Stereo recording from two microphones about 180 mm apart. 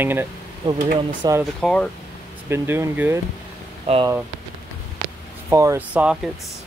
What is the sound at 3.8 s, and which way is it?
Speech, 30° right (ahead or behind).